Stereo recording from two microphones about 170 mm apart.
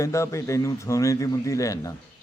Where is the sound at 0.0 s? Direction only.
15° left (ahead or behind).